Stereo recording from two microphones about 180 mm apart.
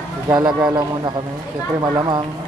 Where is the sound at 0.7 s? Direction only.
25° right (ahead or behind).